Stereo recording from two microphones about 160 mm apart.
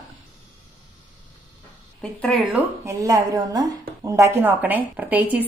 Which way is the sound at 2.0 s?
5° left (ahead or behind).